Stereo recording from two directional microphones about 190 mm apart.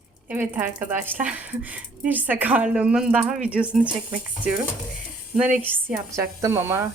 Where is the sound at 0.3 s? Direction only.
10° right (ahead or behind).